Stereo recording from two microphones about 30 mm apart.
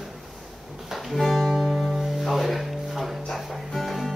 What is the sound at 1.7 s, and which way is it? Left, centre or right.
Music, centre.